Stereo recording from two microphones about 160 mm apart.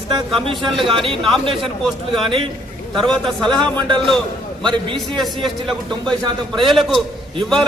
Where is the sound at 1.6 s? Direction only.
Centre (ahead or behind).